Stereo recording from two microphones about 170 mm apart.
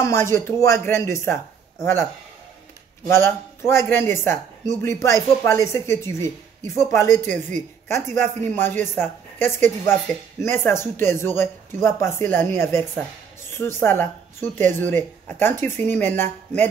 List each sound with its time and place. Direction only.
0.0 s speech: 15° left (ahead or behind)
3.1 s speech: 15° left (ahead or behind)